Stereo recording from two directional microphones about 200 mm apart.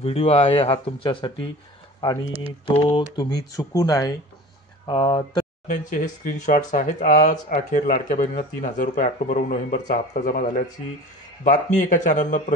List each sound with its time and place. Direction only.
0.0 s speech: 30° left (ahead or behind)
2.6 s speech: 30° left (ahead or behind)
5.7 s speech: 40° left (ahead or behind)